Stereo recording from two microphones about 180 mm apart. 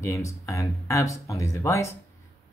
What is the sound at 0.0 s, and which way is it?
Speech, 15° left (ahead or behind).